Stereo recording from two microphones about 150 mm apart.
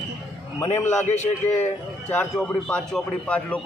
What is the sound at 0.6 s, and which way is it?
Speech, 15° left (ahead or behind).